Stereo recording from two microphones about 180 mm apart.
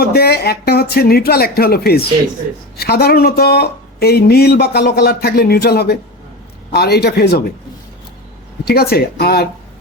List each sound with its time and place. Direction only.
0.0 s speech: 60° left (ahead or behind)
8.6 s speech: 60° left (ahead or behind)